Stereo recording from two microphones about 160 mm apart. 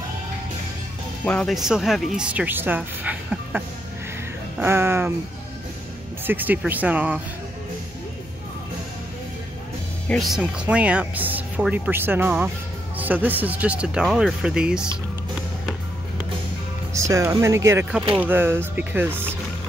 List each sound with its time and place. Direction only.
1.2 s speech: 5° left (ahead or behind); by 5.1 s 15° right (ahead or behind)
6.2 s speech: 10° right (ahead or behind)
10.0 s speech: centre (ahead or behind)
16.9 s music: 20° right (ahead or behind)
17.4 s speech: 15° right (ahead or behind)